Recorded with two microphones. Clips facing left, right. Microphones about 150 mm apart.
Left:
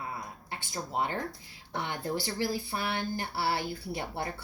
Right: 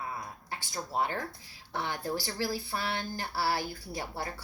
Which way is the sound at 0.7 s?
20° left (ahead or behind).